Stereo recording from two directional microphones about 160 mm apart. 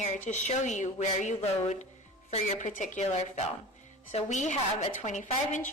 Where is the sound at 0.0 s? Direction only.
50° left (ahead or behind).